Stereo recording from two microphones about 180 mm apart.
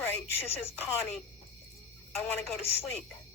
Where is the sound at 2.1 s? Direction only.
5° left (ahead or behind).